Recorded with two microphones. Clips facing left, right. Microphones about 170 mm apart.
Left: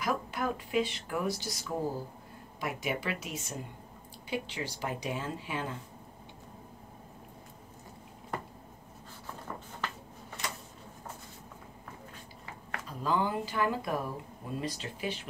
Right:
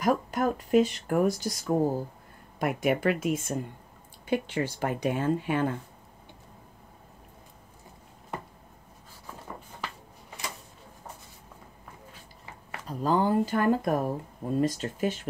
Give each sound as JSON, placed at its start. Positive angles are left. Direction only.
{"t": 0.0, "sound": "speech", "side_deg": -45}
{"t": 12.8, "sound": "speech", "side_deg": -40}